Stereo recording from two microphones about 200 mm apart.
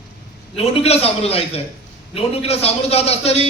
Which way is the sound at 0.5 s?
30° left (ahead or behind).